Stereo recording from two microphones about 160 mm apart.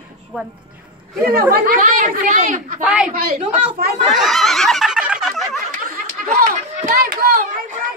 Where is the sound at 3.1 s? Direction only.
70° right (ahead or behind).